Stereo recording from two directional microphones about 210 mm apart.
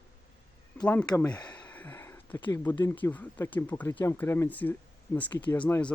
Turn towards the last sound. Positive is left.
turn(degrees=10)  # may be behind; listen again after turning